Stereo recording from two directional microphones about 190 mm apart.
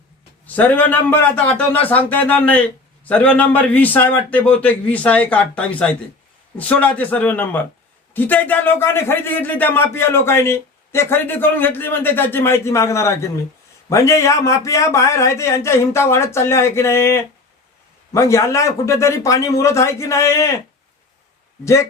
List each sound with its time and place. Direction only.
0.4 s speech: 10° left (ahead or behind)
21.6 s speech: 15° left (ahead or behind)